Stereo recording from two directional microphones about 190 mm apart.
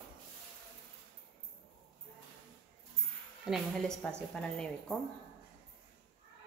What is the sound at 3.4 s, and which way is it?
Speech, centre (ahead or behind).